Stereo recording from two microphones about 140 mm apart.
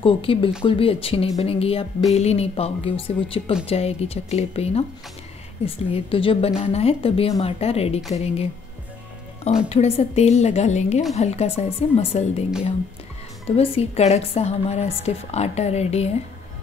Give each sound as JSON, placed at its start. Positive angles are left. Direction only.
{"t": 0.0, "sound": "a woman's voice", "side_deg": 40}
{"t": 5.9, "sound": "a woman's voice", "side_deg": 40}
{"t": 9.7, "sound": "a woman's voice", "side_deg": 50}
{"t": 13.5, "sound": "a woman's voice", "side_deg": 45}